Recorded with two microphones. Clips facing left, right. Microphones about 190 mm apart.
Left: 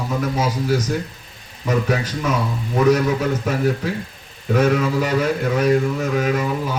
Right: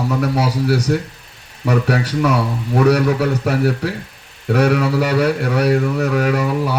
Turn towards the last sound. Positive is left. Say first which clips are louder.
# right 3 dB
turn(degrees=-70)  # may be behind; listen again after turning